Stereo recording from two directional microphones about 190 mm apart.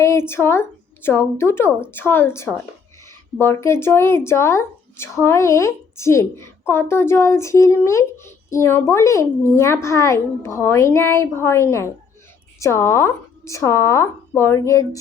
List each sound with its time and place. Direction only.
0.0 s speech: 15° left (ahead or behind)